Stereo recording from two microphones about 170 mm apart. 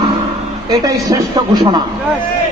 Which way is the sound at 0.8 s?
20° right (ahead or behind).